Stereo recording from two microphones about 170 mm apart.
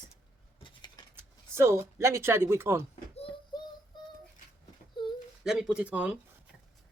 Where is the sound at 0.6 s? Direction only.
30° left (ahead or behind).